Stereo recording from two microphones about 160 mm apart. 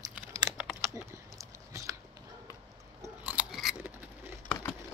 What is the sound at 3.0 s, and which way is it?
Chewing, 10° right (ahead or behind).